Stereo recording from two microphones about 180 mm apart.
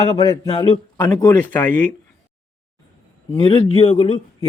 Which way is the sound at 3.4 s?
30° left (ahead or behind).